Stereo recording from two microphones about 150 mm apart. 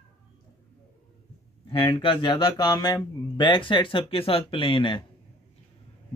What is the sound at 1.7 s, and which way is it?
Speech, 35° left (ahead or behind).